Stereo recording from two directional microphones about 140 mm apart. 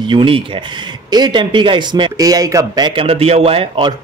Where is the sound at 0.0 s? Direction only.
40° right (ahead or behind).